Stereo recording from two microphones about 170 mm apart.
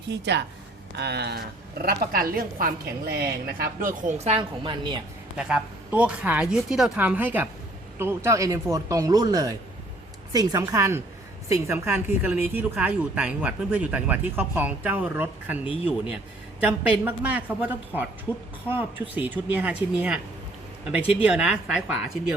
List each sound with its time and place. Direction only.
0.1 s a woman's voice: 90° right
0.9 s speech: 75° right (ahead or behind); by 4.9 s 30° right (ahead or behind)
5.4 s speech: 5° right (ahead or behind)
21.2 s a woman's voice: 5° right (ahead or behind)